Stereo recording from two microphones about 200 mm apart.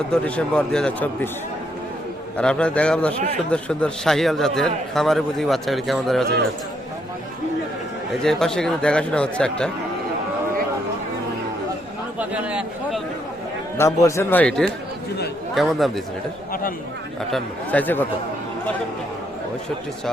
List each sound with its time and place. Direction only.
0.1 s a man's voice: 5° left (ahead or behind)
2.4 s a man's voice: 5° left (ahead or behind)
8.2 s a man's voice: centre (ahead or behind)
12.2 s a man's voice: 5° right (ahead or behind)
13.7 s a man's voice: 15° left (ahead or behind)
17.3 s speech: 5° left (ahead or behind)